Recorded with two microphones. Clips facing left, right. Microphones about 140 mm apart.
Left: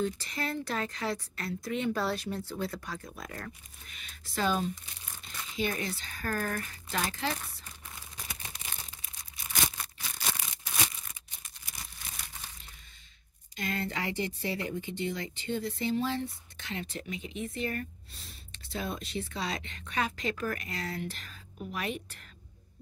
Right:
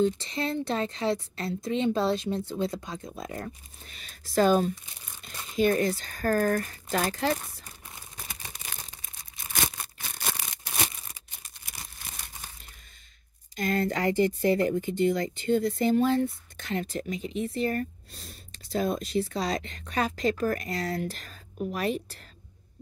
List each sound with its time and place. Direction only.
0.0 s a woman's voice: 25° right (ahead or behind); by 7.3 s 45° right (ahead or behind)
9.0 s a sound: 50° right (ahead or behind)
13.6 s speech: 45° right (ahead or behind)